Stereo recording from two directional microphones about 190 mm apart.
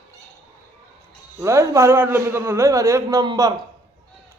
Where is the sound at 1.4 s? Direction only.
15° right (ahead or behind).